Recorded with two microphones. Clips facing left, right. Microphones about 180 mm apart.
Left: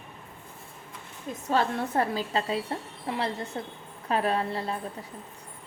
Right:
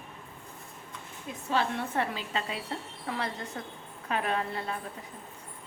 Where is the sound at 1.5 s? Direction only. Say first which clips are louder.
Left 3 dB; 40° left (ahead or behind).